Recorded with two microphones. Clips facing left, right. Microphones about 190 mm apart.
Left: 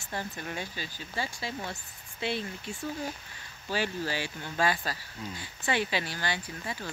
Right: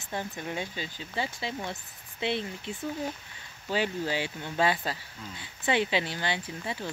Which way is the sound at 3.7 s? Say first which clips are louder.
Right 2 dB; 20° right (ahead or behind).